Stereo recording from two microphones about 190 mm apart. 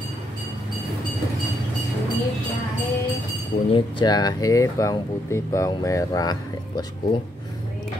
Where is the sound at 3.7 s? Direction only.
25° left (ahead or behind).